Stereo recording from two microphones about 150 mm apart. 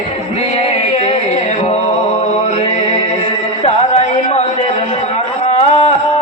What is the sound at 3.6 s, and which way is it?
Music, 45° left (ahead or behind).